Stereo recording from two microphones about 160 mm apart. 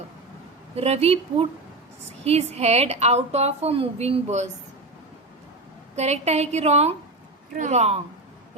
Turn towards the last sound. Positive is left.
turn(degrees=-45)  # may be behind; listen again after turning